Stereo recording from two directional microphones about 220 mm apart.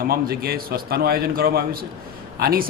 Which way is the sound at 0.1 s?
45° right (ahead or behind).